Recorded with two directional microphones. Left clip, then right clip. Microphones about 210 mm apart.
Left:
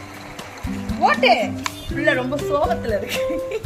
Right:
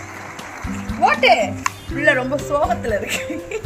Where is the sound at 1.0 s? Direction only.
20° right (ahead or behind).